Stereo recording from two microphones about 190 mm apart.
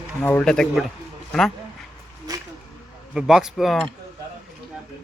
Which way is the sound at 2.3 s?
20° right (ahead or behind).